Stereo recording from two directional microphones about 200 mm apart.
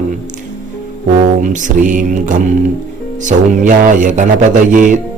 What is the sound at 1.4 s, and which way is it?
Speech, 40° right (ahead or behind).